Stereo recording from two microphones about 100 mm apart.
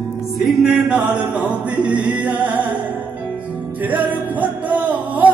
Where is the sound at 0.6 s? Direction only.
10° right (ahead or behind).